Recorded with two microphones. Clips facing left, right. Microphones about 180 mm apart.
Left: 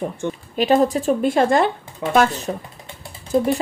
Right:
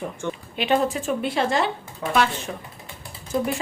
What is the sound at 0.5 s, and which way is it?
Speech, 40° left (ahead or behind).